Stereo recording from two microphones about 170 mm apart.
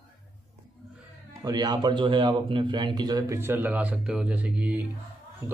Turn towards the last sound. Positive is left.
turn(degrees=-10)  # may be behind; listen again after turning